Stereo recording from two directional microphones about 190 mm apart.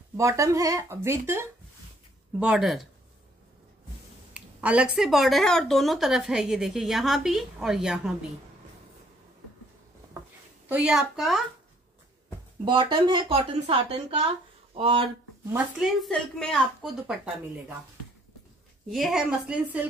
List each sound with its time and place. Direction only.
0.2 s speech: 15° right (ahead or behind)
2.4 s speech: centre (ahead or behind)
4.3 s speech: 5° right (ahead or behind)
10.7 s speech: 5° right (ahead or behind)
12.6 s speech: 25° right (ahead or behind)
15.5 s speech: centre (ahead or behind)
18.9 s speech: centre (ahead or behind)